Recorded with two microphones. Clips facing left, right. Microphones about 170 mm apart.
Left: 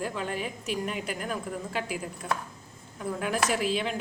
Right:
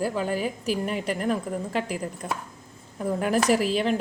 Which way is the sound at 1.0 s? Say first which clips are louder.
Right 7 dB; 35° right (ahead or behind).